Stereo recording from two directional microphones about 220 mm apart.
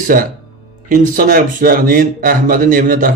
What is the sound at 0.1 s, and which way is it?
A man's voice, 40° right (ahead or behind).